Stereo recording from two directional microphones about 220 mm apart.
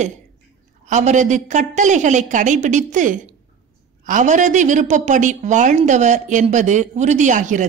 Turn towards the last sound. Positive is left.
turn(degrees=-35)  # may be behind; listen again after turning